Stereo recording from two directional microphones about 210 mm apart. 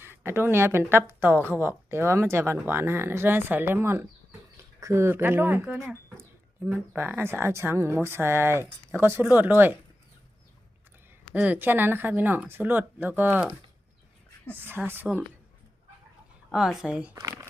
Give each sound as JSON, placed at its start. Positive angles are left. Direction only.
{"t": 0.0, "sound": "speech", "side_deg": -10}
{"t": 6.9, "sound": "speech", "side_deg": -10}
{"t": 11.3, "sound": "speech", "side_deg": -10}
{"t": 16.5, "sound": "a woman's voice", "side_deg": -5}